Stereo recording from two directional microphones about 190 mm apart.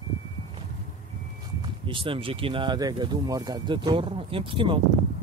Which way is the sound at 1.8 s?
25° right (ahead or behind).